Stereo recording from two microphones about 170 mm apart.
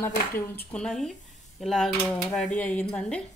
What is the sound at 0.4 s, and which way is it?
Speech, 15° left (ahead or behind).